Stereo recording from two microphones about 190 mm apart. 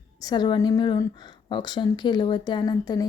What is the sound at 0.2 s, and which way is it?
A woman's voice, 20° left (ahead or behind).